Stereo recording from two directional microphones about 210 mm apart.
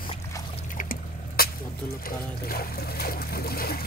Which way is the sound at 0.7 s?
40° left (ahead or behind).